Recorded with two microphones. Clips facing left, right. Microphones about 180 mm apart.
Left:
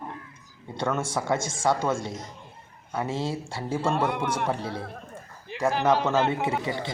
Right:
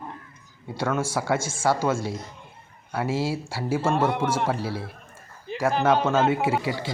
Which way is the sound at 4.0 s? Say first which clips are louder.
Right 3 dB; 20° right (ahead or behind).